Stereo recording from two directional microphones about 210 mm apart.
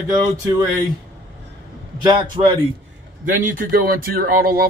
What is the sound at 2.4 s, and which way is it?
Speech, 30° right (ahead or behind).